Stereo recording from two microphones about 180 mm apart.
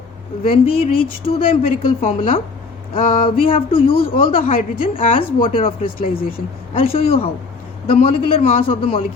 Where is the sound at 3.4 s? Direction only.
30° left (ahead or behind).